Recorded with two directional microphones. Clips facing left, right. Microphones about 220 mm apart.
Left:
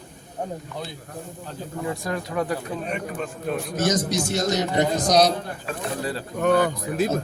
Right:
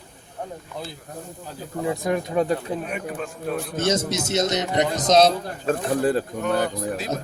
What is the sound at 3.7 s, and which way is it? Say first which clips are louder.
A man's voice: even; 25° right (ahead or behind).